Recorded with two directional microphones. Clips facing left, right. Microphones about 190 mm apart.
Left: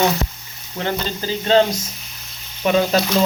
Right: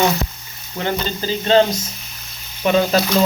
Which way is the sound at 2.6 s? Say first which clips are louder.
Right 1 dB; 5° left (ahead or behind).